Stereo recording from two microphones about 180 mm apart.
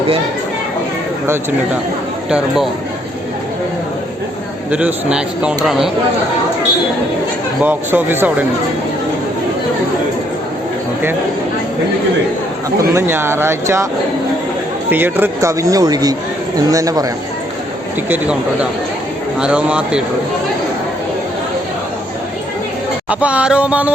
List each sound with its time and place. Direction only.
4.7 s speech: 5° right (ahead or behind)
7.6 s speech: 10° right (ahead or behind)
12.9 s speech: 15° right (ahead or behind)
14.8 s speech: 10° right (ahead or behind)
19.4 s speech: 5° right (ahead or behind)
23.0 s speech: 5° right (ahead or behind)